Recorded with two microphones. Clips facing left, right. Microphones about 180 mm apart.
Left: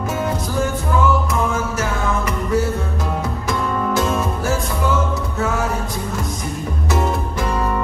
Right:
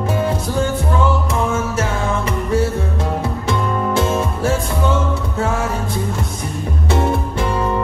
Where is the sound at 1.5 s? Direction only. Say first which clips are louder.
Right 2 dB; 30° right (ahead or behind).